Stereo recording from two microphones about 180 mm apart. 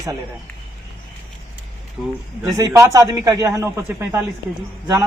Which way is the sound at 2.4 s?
20° right (ahead or behind).